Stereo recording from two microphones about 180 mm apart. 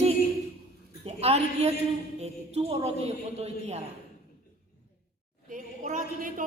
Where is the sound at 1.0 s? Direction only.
35° right (ahead or behind).